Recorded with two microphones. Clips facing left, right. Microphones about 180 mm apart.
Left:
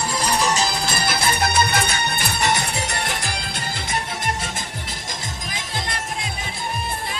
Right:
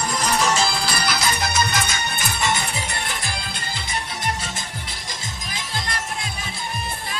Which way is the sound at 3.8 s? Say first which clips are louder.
Left 2 dB; 50° left (ahead or behind).